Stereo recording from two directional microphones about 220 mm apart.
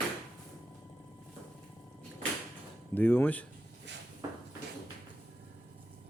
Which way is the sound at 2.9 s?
10° left (ahead or behind).